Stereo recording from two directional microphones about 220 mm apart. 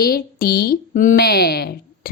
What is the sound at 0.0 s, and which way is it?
Speech, 45° left (ahead or behind).